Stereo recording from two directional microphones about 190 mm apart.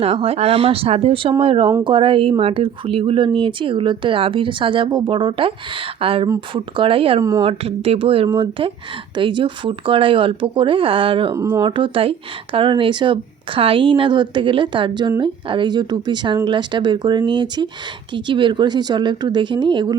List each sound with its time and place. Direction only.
0.0 s speech: 30° right (ahead or behind)
7.2 s speech: 15° right (ahead or behind)
7.4 s speech: 30° right (ahead or behind)